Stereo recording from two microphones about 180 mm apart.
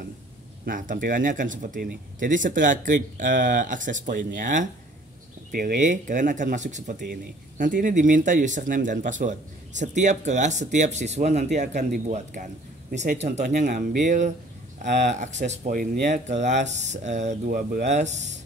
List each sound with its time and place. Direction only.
0.7 s speech: 50° right (ahead or behind)